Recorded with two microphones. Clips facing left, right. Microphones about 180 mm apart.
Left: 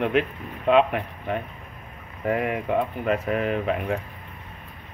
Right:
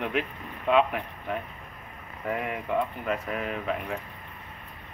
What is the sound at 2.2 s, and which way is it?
Speech, 65° left (ahead or behind).